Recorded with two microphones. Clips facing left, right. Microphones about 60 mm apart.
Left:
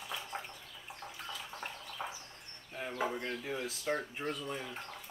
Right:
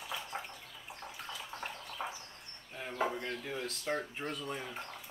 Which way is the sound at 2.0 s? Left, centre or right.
Centre.